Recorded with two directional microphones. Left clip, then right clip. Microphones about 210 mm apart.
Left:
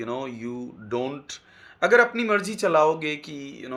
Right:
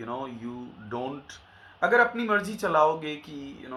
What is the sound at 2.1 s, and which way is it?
Speech, 20° left (ahead or behind).